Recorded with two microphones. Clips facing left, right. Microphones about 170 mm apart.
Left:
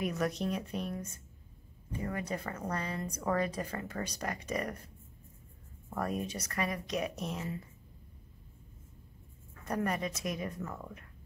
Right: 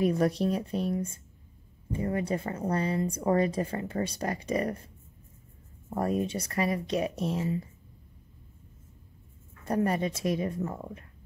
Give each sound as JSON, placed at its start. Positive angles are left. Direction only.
{"t": 0.0, "sound": "a woman's voice", "side_deg": -30}
{"t": 5.9, "sound": "a woman's voice", "side_deg": -30}
{"t": 9.7, "sound": "a woman's voice", "side_deg": -30}